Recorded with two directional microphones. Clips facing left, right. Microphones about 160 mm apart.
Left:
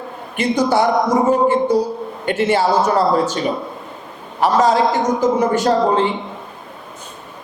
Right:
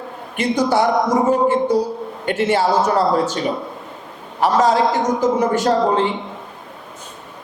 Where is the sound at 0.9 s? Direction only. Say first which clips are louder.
Left 1 dB; 25° left (ahead or behind).